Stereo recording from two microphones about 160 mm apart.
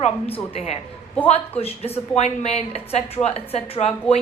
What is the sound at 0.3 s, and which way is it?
A woman's voice, 40° left (ahead or behind).